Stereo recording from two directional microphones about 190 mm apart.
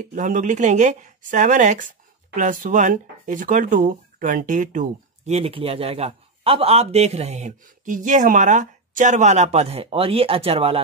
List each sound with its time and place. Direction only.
0.0 s speech: 45° right (ahead or behind)